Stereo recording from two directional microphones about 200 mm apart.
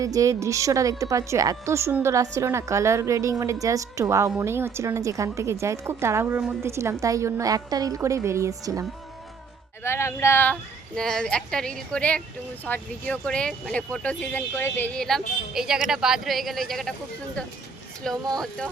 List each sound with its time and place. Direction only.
0.0 s a woman's voice: 15° right (ahead or behind)
9.8 s speech: 15° left (ahead or behind)
18.3 s speech: 5° left (ahead or behind)